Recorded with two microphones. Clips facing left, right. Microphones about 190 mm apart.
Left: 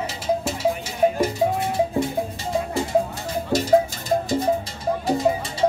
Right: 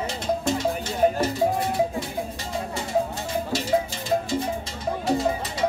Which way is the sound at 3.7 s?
50° left (ahead or behind).